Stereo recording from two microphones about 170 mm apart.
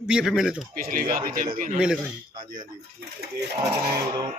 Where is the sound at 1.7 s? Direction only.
5° right (ahead or behind).